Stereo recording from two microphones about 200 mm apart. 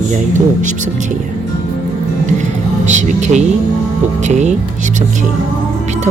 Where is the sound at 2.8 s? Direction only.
35° right (ahead or behind).